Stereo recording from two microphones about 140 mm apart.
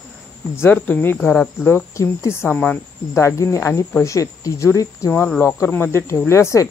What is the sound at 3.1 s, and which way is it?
Speech, 20° left (ahead or behind).